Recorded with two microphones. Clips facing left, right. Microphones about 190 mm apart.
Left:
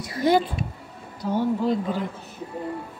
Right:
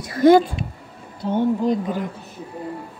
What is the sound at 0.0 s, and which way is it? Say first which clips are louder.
Speech: right 7 dB; 50° right (ahead or behind).